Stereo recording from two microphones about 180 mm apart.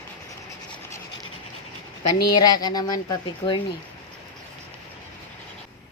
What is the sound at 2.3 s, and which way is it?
Speech, 25° left (ahead or behind).